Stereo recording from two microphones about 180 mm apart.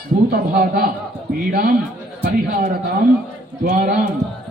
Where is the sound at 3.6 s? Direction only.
45° right (ahead or behind).